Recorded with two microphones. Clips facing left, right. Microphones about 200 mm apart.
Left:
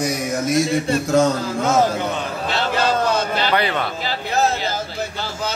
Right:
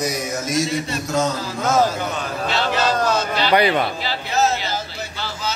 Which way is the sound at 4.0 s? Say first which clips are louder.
Even; 50° left (ahead or behind).